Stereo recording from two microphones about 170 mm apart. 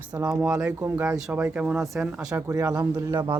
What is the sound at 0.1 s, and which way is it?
Speech, 5° right (ahead or behind).